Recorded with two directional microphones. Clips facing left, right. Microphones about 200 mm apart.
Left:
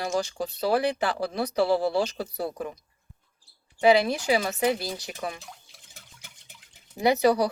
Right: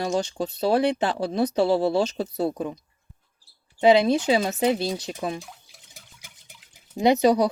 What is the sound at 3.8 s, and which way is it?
Speech, 25° right (ahead or behind).